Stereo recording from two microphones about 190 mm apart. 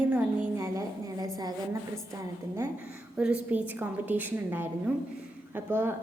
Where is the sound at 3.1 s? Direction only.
5° right (ahead or behind).